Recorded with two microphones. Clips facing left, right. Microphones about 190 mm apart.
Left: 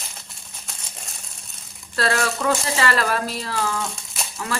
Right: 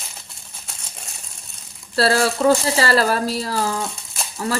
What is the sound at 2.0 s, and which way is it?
Speech, 35° right (ahead or behind).